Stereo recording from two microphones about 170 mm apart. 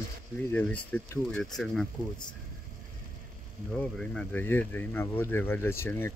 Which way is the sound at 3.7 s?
5° left (ahead or behind).